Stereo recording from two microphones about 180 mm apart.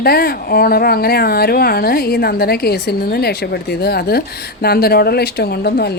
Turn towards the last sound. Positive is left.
turn(degrees=60)  # may be behind; listen again after turning